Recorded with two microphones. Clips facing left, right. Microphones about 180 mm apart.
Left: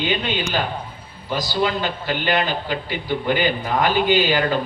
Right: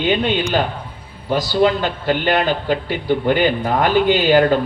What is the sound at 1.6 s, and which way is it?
Speech, 50° right (ahead or behind).